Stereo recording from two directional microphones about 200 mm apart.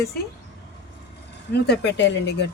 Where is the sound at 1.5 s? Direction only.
55° left (ahead or behind).